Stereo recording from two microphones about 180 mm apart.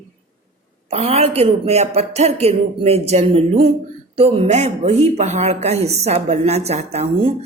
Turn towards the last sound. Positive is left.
turn(degrees=-35)  # may be behind; listen again after turning